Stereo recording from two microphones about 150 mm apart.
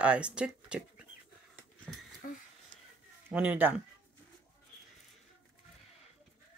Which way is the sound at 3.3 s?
10° right (ahead or behind).